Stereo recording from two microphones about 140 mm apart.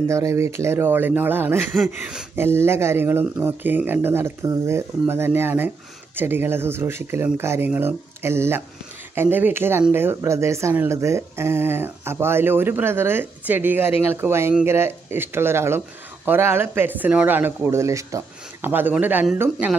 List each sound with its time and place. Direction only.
0.1 s speech: 20° right (ahead or behind)